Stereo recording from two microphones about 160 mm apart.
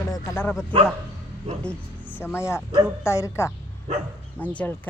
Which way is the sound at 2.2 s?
15° left (ahead or behind).